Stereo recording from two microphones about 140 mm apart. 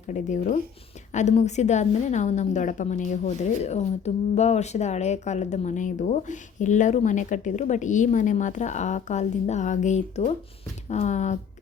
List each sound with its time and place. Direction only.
0.1 s a woman's voice: 60° left (ahead or behind)